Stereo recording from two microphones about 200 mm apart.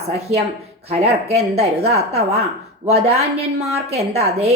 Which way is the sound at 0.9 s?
30° right (ahead or behind).